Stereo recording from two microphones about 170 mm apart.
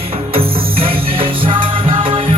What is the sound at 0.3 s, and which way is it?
Music, 30° right (ahead or behind).